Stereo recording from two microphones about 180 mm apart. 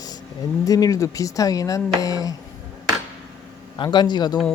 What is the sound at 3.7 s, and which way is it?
Speech, 25° left (ahead or behind).